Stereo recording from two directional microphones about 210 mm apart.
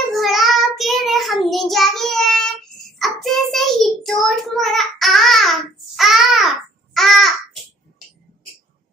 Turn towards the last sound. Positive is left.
turn(degrees=0)  # may be behind; listen again after turning